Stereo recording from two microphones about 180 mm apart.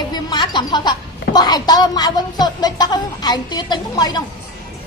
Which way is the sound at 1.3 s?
20° left (ahead or behind).